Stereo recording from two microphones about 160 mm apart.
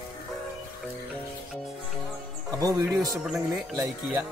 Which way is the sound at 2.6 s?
25° right (ahead or behind).